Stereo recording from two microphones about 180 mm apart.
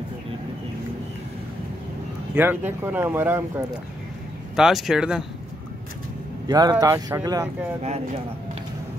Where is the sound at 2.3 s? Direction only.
10° right (ahead or behind).